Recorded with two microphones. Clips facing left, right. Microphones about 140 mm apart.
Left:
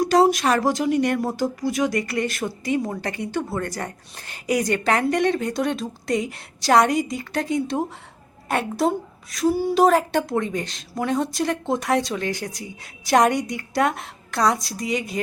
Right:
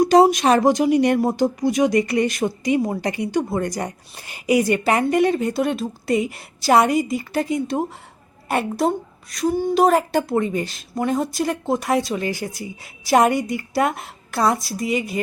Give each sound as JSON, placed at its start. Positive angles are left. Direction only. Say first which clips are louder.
{"t": 0.0, "sound": "a woman's voice", "louder": "right 4 dB", "side_deg": -20}